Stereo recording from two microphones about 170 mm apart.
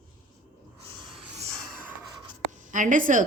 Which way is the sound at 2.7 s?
50° right (ahead or behind).